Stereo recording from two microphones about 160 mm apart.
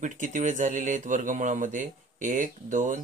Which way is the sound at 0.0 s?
50° right (ahead or behind).